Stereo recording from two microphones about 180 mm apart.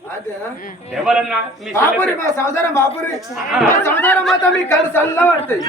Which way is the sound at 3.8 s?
10° left (ahead or behind).